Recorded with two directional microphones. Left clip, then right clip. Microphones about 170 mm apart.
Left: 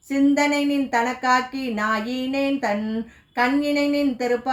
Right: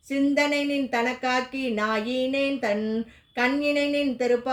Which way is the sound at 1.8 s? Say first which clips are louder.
Left 2 dB; 35° right (ahead or behind).